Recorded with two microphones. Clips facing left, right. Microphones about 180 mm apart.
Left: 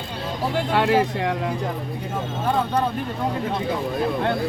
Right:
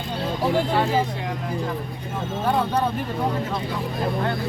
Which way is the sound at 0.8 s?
70° left (ahead or behind).